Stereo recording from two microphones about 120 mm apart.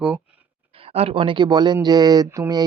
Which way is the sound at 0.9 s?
55° right (ahead or behind).